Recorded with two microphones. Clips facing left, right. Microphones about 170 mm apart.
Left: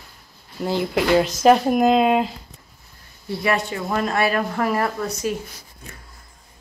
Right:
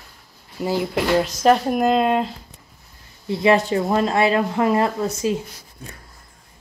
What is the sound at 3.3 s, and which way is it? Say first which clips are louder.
Speech: right 6 dB; 25° right (ahead or behind).